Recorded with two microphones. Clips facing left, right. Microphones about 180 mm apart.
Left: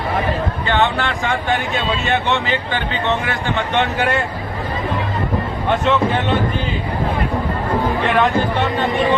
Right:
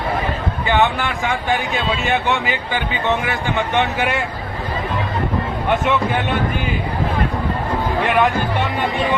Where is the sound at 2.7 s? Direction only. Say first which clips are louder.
Right 3 dB; 15° right (ahead or behind).